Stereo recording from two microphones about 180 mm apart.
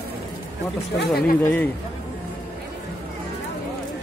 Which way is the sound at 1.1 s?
60° left (ahead or behind).